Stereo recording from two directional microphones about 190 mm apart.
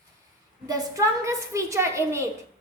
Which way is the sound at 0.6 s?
20° right (ahead or behind).